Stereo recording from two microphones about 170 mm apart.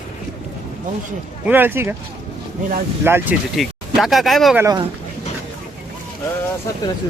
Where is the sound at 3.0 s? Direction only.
10° right (ahead or behind).